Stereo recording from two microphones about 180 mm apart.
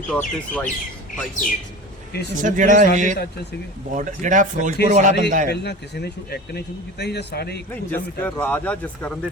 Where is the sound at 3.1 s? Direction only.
65° left (ahead or behind).